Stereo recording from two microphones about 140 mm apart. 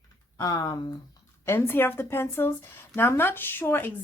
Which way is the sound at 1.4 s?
15° left (ahead or behind).